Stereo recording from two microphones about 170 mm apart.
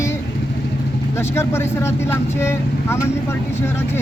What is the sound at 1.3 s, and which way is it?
Speech, 15° left (ahead or behind).